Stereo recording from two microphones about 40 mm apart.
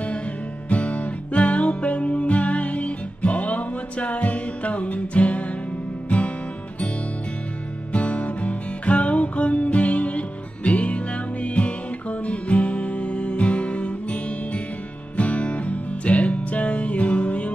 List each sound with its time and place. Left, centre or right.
0.7 s music: left
7.9 s music: left